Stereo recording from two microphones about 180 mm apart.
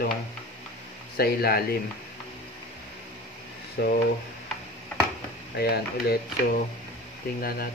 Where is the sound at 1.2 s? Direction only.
55° left (ahead or behind).